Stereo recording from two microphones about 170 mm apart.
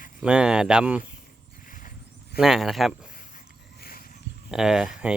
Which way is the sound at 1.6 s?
50° left (ahead or behind).